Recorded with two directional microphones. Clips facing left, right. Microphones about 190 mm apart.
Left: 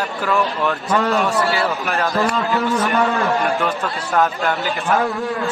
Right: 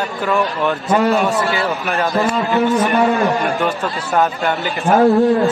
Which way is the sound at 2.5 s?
25° right (ahead or behind).